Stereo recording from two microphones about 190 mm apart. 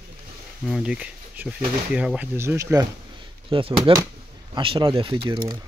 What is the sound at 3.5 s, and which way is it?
Speech, 30° right (ahead or behind).